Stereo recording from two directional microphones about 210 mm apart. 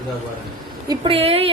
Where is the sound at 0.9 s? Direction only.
25° right (ahead or behind).